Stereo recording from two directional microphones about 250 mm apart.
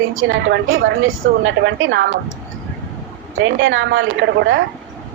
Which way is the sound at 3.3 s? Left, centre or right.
Right.